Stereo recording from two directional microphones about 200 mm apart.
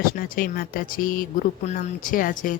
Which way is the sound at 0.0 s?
45° left (ahead or behind).